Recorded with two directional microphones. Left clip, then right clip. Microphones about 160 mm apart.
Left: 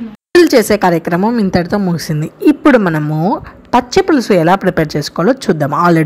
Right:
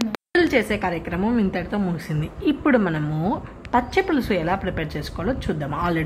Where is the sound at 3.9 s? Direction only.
35° left (ahead or behind).